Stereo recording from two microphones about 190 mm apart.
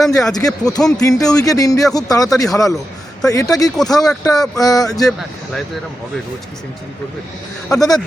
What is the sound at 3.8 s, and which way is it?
Speech, centre (ahead or behind).